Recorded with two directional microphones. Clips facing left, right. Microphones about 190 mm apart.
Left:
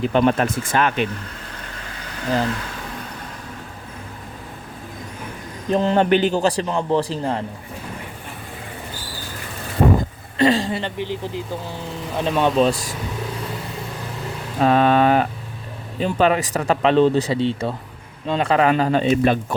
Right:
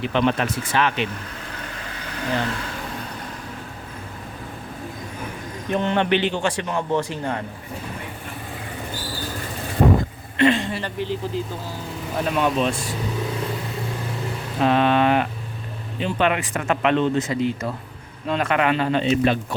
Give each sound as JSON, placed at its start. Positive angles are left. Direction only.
{"t": 0.0, "sound": "speech", "side_deg": 45}
{"t": 5.6, "sound": "a man's voice", "side_deg": 35}
{"t": 10.3, "sound": "a man's voice", "side_deg": 35}
{"t": 14.6, "sound": "a man's voice", "side_deg": 40}